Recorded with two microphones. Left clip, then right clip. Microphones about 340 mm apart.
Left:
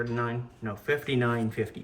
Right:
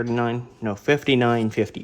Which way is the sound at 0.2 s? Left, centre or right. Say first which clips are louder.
Right 7 dB; centre.